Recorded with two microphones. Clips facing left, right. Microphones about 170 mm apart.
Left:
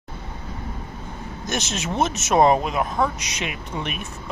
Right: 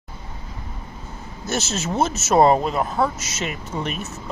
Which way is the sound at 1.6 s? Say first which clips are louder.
Right 1 dB; 15° left (ahead or behind).